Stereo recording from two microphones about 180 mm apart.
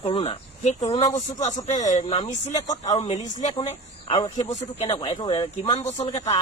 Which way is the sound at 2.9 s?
35° left (ahead or behind).